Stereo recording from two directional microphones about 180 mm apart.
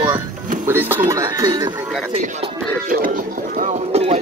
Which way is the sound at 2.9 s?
50° right (ahead or behind).